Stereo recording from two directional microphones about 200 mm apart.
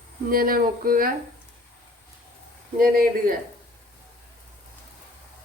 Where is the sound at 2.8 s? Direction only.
45° right (ahead or behind).